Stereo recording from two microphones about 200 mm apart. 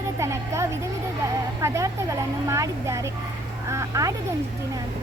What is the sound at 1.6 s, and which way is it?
Speech, 15° right (ahead or behind).